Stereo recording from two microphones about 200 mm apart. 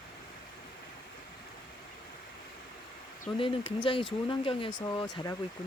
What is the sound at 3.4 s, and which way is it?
Speech, 25° left (ahead or behind).